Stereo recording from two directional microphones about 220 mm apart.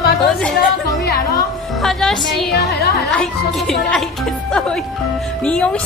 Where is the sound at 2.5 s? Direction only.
50° left (ahead or behind).